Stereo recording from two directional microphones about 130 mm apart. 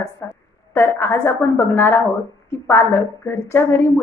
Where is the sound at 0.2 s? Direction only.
15° left (ahead or behind).